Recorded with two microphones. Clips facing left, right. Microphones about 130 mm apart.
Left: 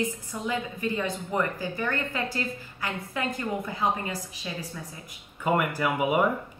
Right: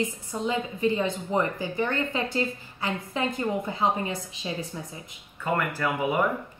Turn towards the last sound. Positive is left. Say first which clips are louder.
# left 1 dB
turn(degrees=15)  # may be behind; listen again after turning